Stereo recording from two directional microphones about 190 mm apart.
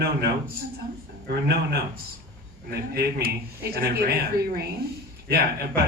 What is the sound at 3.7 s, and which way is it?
Speech, 55° right (ahead or behind).